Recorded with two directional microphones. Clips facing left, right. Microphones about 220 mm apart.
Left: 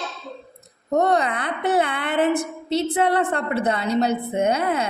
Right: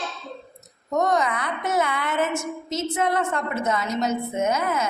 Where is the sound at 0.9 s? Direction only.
35° left (ahead or behind).